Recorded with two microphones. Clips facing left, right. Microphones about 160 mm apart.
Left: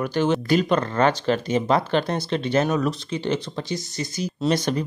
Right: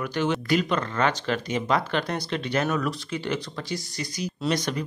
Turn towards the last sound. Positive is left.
turn(degrees=30)  # may be behind; listen again after turning